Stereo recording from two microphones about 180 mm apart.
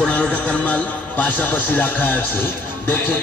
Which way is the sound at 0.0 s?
5° left (ahead or behind).